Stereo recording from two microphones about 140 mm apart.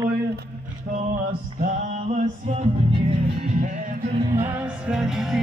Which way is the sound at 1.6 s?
60° right (ahead or behind).